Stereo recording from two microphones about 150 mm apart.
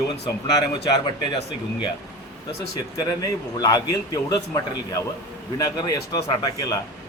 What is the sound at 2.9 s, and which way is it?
A man's voice, 25° left (ahead or behind).